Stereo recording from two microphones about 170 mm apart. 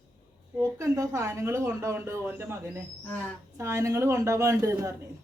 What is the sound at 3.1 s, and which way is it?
Speech, 10° left (ahead or behind).